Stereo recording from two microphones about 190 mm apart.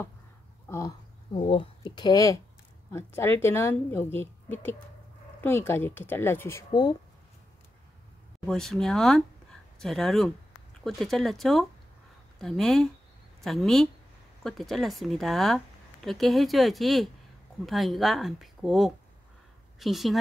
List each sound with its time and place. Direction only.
0.7 s a sound: 15° left (ahead or behind)
1.3 s a woman's voice: 30° left (ahead or behind)
8.5 s a woman's voice: centre (ahead or behind)